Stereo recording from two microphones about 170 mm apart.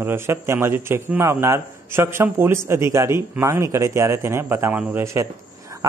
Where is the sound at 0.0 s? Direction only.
15° right (ahead or behind).